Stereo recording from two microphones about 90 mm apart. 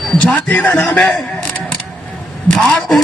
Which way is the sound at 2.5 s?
5° left (ahead or behind).